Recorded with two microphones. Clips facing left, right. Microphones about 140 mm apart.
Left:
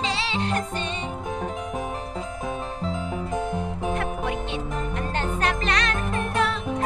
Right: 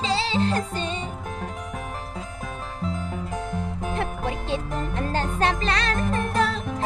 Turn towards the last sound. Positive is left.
turn(degrees=-35)  # may be behind; listen again after turning